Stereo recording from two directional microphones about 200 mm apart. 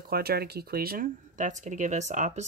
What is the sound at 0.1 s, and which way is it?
Speech, 50° right (ahead or behind).